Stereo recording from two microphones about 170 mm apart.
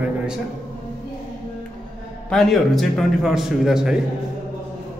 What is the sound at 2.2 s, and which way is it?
A man's voice, centre (ahead or behind).